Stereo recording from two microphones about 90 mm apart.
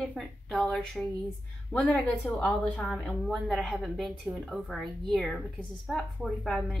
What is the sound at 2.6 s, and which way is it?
Speech, 20° left (ahead or behind).